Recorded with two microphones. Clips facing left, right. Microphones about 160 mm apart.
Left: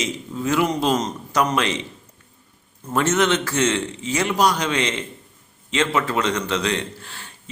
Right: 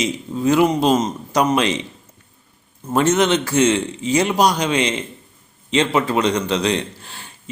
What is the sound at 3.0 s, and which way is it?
Speech, 15° right (ahead or behind).